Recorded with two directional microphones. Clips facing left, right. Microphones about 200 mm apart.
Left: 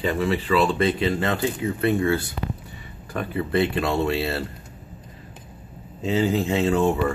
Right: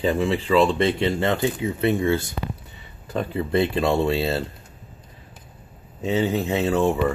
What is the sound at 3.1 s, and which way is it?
Speech, 25° right (ahead or behind).